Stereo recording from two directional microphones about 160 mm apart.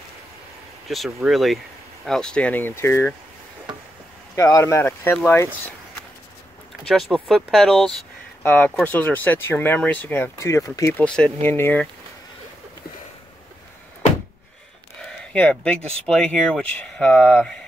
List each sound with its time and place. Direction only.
0.8 s speech: centre (ahead or behind); by 3.1 s 15° left (ahead or behind)
4.4 s speech: 20° left (ahead or behind)
6.8 s speech: 5° left (ahead or behind)
15.0 s speech: 5° left (ahead or behind)